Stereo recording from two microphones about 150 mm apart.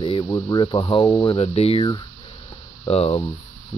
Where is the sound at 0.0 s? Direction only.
30° left (ahead or behind).